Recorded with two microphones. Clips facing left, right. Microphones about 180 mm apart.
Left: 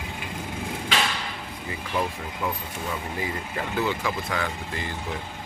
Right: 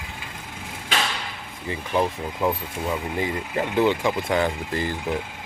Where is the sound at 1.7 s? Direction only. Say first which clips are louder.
Right 5 dB; 25° right (ahead or behind).